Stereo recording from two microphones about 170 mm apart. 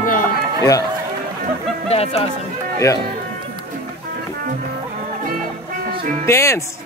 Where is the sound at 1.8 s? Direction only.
35° left (ahead or behind).